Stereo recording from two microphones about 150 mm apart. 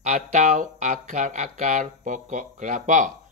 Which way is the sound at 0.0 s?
50° right (ahead or behind).